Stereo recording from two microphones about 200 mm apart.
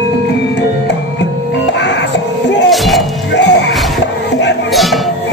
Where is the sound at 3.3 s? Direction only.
60° left (ahead or behind).